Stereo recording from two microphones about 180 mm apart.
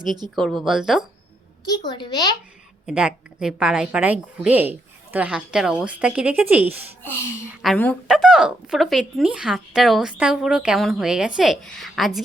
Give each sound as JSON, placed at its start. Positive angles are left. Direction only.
{"t": 0.3, "sound": "speech", "side_deg": 0}
{"t": 1.6, "sound": "a child's voice", "side_deg": 25}
{"t": 2.8, "sound": "a woman's voice", "side_deg": -5}
{"t": 7.6, "sound": "speech", "side_deg": 5}